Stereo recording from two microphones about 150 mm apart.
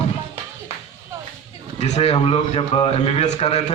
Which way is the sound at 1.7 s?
45° left (ahead or behind).